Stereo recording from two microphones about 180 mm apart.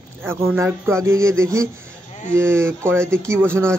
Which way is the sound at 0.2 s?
15° right (ahead or behind).